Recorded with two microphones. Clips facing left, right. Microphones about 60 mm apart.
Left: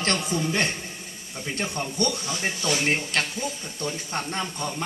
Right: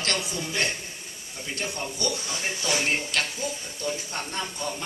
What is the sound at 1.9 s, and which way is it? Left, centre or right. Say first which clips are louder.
Speech: left 6 dB; left.